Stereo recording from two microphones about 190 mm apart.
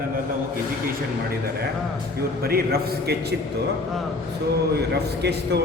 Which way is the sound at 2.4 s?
55° right (ahead or behind).